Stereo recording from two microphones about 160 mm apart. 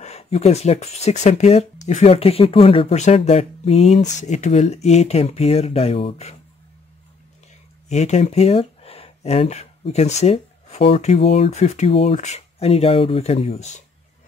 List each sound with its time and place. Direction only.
0.0 s speech: 40° left (ahead or behind)
7.9 s speech: 45° left (ahead or behind)